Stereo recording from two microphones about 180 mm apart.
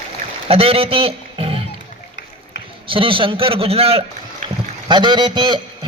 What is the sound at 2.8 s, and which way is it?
A man's voice, 30° right (ahead or behind).